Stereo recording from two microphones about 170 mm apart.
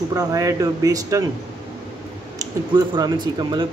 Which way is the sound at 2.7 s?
25° right (ahead or behind).